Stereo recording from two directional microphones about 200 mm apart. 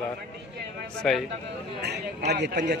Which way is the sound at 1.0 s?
Centre (ahead or behind).